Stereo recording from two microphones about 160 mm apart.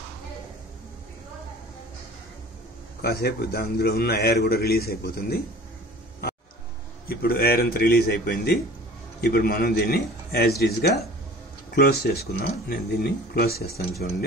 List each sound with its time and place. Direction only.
3.0 s a man's voice: 80° left
7.1 s a man's voice: 70° left (ahead or behind)
10.6 s speech: 90° left
11.7 s a man's voice: 80° left